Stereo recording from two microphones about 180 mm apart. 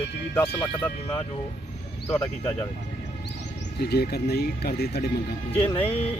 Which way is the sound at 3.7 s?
65° left (ahead or behind).